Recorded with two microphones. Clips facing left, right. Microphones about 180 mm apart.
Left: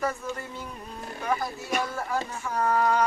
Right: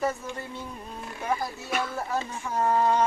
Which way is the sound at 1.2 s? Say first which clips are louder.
Left 1 dB; 25° right (ahead or behind).